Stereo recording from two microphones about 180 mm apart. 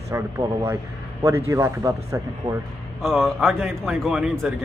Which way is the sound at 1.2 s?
15° right (ahead or behind).